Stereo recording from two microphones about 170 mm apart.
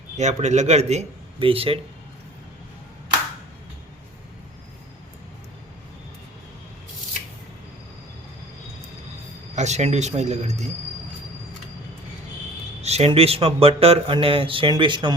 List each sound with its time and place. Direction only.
0.2 s speech: 45° right (ahead or behind)
9.6 s speech: 40° right (ahead or behind)
12.8 s speech: 40° right (ahead or behind)